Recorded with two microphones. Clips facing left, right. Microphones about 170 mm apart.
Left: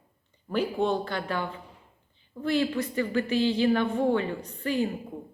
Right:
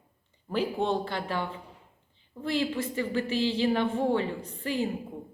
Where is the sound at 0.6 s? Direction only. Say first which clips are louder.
Left 1 dB; 25° right (ahead or behind).